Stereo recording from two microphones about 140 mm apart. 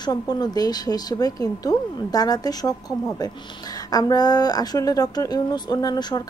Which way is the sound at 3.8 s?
30° left (ahead or behind).